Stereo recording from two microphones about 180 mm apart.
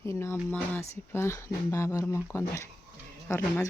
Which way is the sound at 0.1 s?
15° left (ahead or behind).